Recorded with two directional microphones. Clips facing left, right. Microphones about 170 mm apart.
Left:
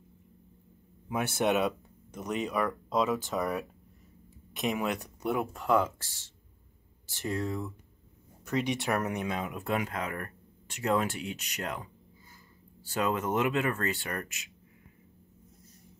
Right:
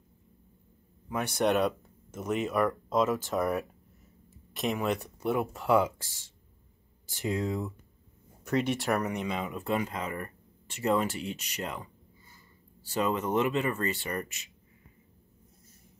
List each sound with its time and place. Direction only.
1.0 s speech: 5° left (ahead or behind)
5.7 s speech: 10° right (ahead or behind)
7.1 s speech: 15° right (ahead or behind)
8.5 s speech: centre (ahead or behind)